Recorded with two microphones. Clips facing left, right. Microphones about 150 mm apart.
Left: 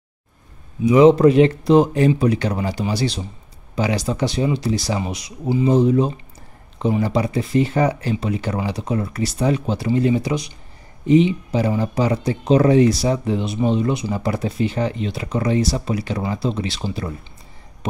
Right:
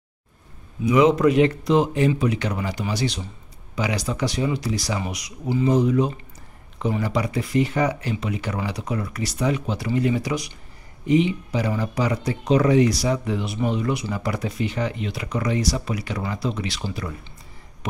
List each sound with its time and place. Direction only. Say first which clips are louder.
0.8 s speech: left 5 dB; 30° left (ahead or behind)